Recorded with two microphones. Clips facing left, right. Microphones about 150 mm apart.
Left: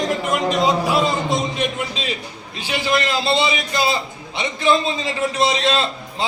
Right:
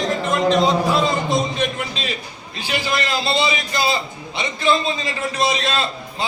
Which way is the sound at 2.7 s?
20° left (ahead or behind).